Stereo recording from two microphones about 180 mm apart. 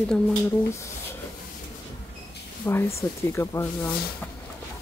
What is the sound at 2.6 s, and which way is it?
Speech, 15° left (ahead or behind).